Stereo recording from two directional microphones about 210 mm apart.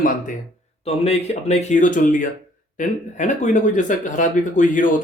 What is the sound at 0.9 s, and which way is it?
Speech, 30° left (ahead or behind).